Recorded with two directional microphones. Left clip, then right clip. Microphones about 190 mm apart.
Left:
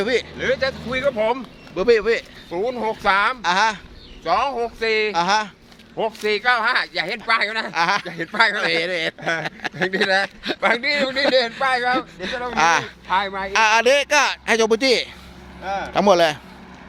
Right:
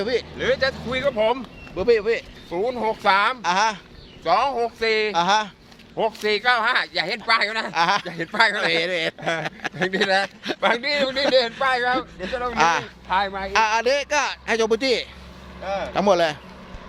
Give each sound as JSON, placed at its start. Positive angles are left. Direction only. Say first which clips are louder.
{"t": 0.0, "sound": "speech", "louder": "left 3 dB", "side_deg": 35}
{"t": 0.3, "sound": "speech", "louder": "even", "side_deg": 0}
{"t": 1.7, "sound": "a man's voice", "louder": "left 2 dB", "side_deg": 30}
{"t": 2.5, "sound": "speech", "louder": "even", "side_deg": 5}
{"t": 4.2, "sound": "speech", "louder": "even", "side_deg": 0}
{"t": 11.9, "sound": "a man's voice", "louder": "left 1 dB", "side_deg": 25}
{"t": 13.1, "sound": "speech", "louder": "even", "side_deg": 15}
{"t": 13.5, "sound": "speech", "louder": "left 5 dB", "side_deg": 35}
{"t": 15.6, "sound": "speech", "louder": "left 1 dB", "side_deg": 0}
{"t": 15.9, "sound": "a man's voice", "louder": "left 4 dB", "side_deg": 30}